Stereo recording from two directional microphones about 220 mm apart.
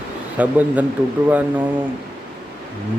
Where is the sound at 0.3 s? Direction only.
5° right (ahead or behind).